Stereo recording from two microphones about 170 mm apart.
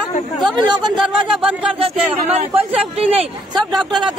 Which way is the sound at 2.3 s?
35° right (ahead or behind).